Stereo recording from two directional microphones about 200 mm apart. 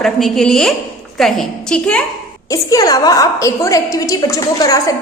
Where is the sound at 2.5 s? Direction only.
15° left (ahead or behind).